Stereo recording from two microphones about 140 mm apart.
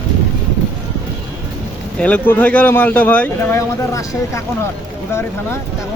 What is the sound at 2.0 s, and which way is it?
Speech, 10° left (ahead or behind).